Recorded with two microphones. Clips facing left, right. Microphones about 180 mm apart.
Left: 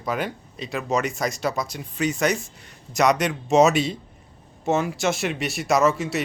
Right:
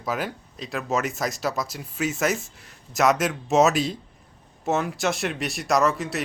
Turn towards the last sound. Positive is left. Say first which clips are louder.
# left 2 dB
turn(degrees=0)  # may be behind; listen again after turning